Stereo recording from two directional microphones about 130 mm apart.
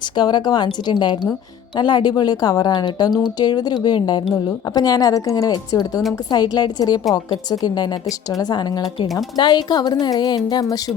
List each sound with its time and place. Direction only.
0.2 s a woman's voice: 35° left (ahead or behind)